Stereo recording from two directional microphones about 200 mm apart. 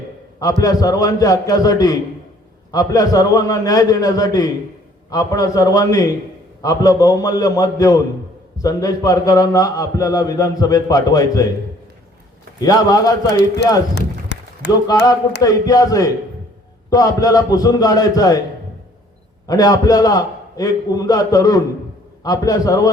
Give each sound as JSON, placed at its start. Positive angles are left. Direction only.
{"t": 0.6, "sound": "a man's voice", "side_deg": 20}
{"t": 12.5, "sound": "a man's voice", "side_deg": 20}
{"t": 13.9, "sound": "run", "side_deg": 60}
{"t": 15.4, "sound": "a man's voice", "side_deg": 20}
{"t": 19.5, "sound": "a man's voice", "side_deg": 20}